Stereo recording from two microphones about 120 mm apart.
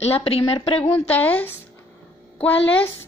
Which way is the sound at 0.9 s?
15° left (ahead or behind).